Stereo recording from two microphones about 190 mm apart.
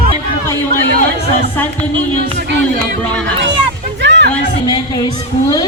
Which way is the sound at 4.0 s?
70° right (ahead or behind).